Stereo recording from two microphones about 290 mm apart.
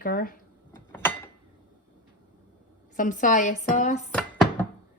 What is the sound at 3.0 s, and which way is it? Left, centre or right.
Speech, left.